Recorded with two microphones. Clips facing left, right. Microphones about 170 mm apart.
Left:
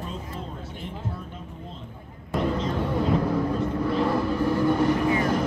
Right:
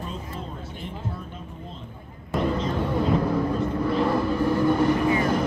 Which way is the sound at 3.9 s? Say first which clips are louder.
Right 1 dB; 55° right (ahead or behind).